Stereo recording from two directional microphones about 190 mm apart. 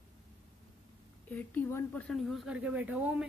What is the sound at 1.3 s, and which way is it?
Speech, 10° left (ahead or behind).